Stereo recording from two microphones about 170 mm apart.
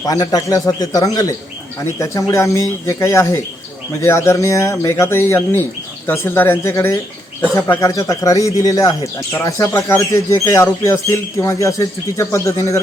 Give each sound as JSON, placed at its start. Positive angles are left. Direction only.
{"t": 0.0, "sound": "speech", "side_deg": 20}